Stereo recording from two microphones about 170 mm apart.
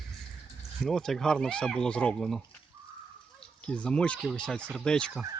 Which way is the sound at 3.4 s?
5° left (ahead or behind).